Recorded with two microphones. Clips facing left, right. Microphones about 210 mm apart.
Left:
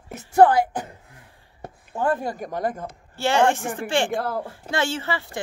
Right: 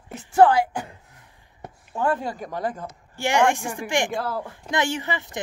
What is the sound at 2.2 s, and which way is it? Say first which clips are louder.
Speech: left 2 dB; 45° left (ahead or behind).